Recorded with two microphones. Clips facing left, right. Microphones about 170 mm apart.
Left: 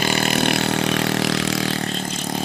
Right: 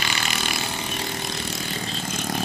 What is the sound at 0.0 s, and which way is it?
Vehicle, 50° left (ahead or behind).